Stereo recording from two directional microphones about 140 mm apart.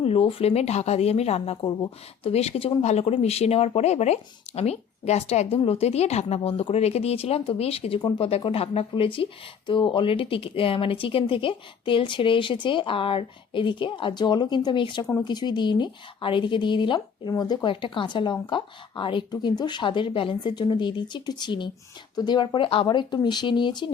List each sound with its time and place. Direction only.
0.0 s speech: 45° left (ahead or behind)